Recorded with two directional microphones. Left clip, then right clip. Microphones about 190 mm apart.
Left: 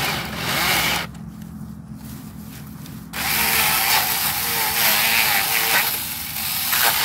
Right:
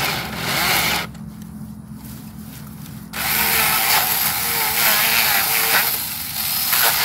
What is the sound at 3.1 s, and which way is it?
Drill, centre (ahead or behind).